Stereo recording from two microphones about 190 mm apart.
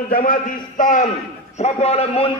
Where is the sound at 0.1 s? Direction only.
45° left (ahead or behind).